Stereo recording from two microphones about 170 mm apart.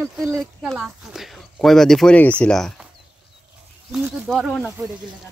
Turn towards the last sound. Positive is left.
turn(degrees=0)  # may be behind; listen again after turning